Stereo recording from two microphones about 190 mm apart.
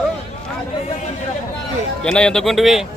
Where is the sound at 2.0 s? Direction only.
5° left (ahead or behind).